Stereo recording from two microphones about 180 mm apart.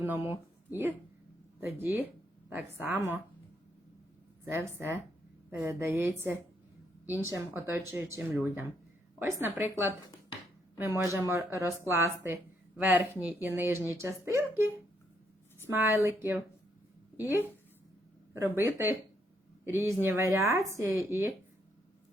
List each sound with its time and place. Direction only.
0.0 s speech: 10° right (ahead or behind)
4.4 s speech: 15° right (ahead or behind)